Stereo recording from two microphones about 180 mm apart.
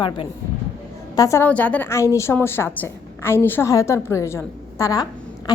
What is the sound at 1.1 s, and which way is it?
A woman's voice, 15° left (ahead or behind).